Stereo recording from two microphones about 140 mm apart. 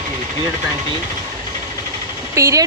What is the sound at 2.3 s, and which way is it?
Speech, 20° right (ahead or behind).